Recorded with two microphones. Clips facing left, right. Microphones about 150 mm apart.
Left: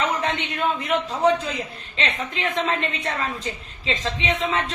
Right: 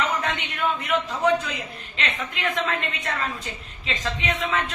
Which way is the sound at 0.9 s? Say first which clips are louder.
Left 2 dB; 30° left (ahead or behind).